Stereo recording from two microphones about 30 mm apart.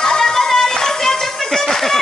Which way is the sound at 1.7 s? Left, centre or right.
Centre.